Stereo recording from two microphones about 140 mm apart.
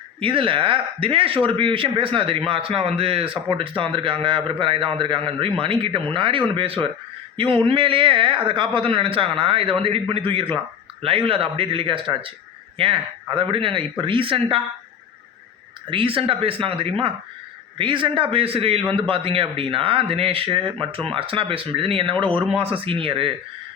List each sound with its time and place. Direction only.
0.2 s a man's voice: 40° right (ahead or behind)
15.9 s a man's voice: 40° right (ahead or behind)